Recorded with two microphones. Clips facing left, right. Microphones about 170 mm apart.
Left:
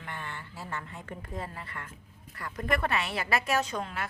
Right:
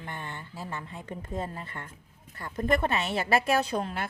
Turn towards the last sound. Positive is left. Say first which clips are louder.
# right 3 dB
turn(degrees=-35)  # may be behind; listen again after turning